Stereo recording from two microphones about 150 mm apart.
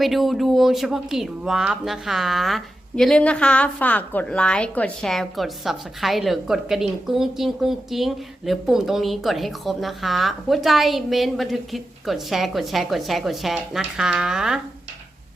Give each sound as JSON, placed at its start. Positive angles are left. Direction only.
{"t": 0.0, "sound": "speech", "side_deg": 0}